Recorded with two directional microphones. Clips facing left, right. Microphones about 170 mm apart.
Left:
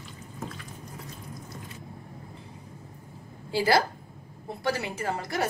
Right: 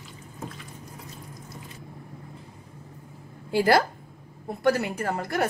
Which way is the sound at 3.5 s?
55° right (ahead or behind).